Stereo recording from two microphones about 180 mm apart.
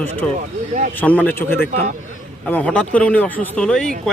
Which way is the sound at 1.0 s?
10° left (ahead or behind).